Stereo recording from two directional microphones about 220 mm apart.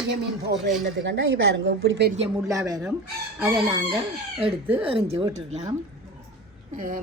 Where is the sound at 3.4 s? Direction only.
5° right (ahead or behind).